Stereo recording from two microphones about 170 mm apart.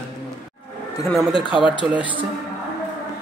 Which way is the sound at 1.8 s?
10° right (ahead or behind).